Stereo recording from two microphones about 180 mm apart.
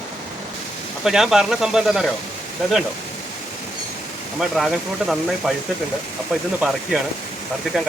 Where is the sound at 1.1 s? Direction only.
Centre (ahead or behind).